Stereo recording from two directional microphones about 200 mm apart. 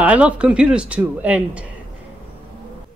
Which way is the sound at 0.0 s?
5° right (ahead or behind).